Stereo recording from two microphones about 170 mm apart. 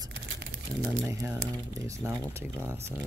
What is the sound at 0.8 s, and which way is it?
Speech, 15° right (ahead or behind).